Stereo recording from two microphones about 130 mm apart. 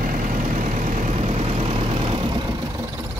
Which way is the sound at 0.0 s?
90° right.